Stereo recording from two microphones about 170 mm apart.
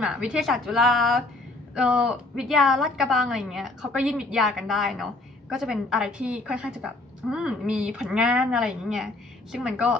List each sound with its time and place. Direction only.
0.0 s a woman's voice: 5° right (ahead or behind)